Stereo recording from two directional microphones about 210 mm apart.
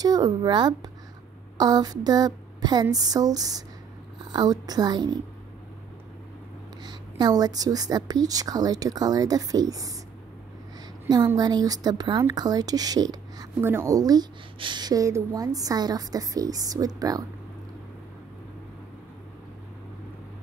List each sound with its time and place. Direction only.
0.0 s a woman's voice: 20° right (ahead or behind)
6.8 s a woman's voice: 20° right (ahead or behind)
11.1 s a woman's voice: 20° right (ahead or behind)